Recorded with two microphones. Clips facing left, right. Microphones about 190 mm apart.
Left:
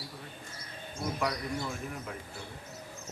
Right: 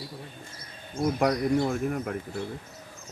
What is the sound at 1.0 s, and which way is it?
A man's voice, 55° right (ahead or behind).